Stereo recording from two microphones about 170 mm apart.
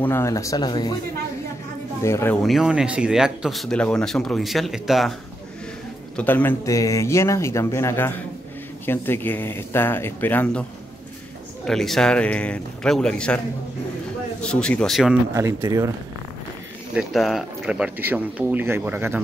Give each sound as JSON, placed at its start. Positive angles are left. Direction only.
{"t": 0.0, "sound": "speech", "side_deg": 15}
{"t": 2.0, "sound": "speech", "side_deg": 15}
{"t": 2.4, "sound": "speech", "side_deg": 0}
{"t": 6.1, "sound": "speech", "side_deg": 10}
{"t": 11.6, "sound": "speech", "side_deg": 0}
{"t": 14.4, "sound": "speech", "side_deg": 5}
{"t": 15.3, "sound": "speech", "side_deg": -20}
{"t": 16.9, "sound": "speech", "side_deg": 0}